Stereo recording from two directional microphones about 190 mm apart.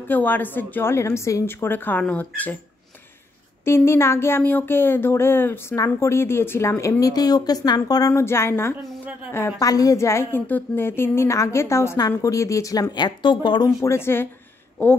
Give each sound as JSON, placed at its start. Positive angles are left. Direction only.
{"t": 0.1, "sound": "speech", "side_deg": 10}
{"t": 3.6, "sound": "speech", "side_deg": 15}
{"t": 13.8, "sound": "speech", "side_deg": 10}